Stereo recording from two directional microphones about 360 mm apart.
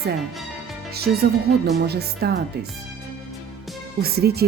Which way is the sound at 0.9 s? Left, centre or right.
Right.